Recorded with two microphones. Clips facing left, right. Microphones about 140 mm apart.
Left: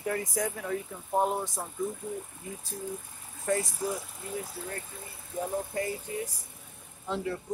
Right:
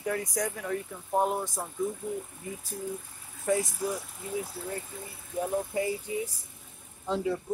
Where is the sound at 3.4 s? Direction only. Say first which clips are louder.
Right 1 dB; centre (ahead or behind).